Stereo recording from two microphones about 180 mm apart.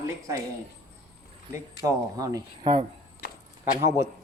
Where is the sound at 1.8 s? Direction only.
20° right (ahead or behind).